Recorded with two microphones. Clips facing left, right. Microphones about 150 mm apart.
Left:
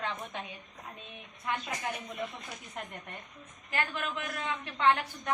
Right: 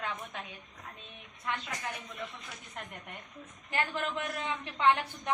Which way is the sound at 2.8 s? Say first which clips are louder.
Left 3 dB; 5° left (ahead or behind).